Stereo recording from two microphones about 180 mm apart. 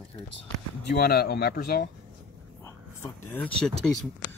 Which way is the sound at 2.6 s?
10° left (ahead or behind).